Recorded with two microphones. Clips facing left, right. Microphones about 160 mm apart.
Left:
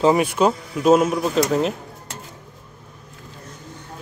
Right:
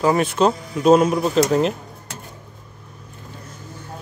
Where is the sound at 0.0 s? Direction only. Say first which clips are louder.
Left 1 dB; 15° left (ahead or behind).